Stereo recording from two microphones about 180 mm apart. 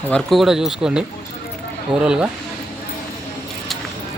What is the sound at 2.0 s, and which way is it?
Speech, 5° right (ahead or behind).